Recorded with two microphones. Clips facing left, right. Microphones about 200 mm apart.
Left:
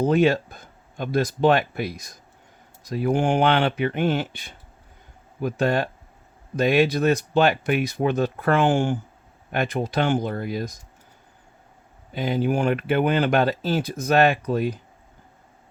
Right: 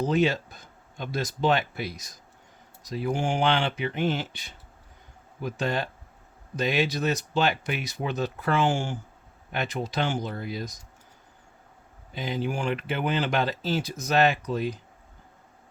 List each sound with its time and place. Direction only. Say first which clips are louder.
0.0 s speech: left 5 dB; 55° left (ahead or behind)
12.1 s speech: left 7 dB; 55° left (ahead or behind)